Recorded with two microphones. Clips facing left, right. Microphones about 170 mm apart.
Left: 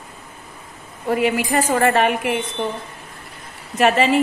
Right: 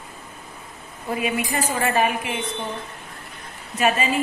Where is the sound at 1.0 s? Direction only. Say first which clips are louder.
Left 6 dB; 75° left (ahead or behind).